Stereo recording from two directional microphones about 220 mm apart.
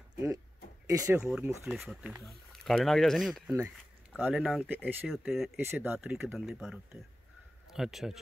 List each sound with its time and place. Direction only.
0.8 s speech: 15° right (ahead or behind)
5.6 s speech: 10° right (ahead or behind)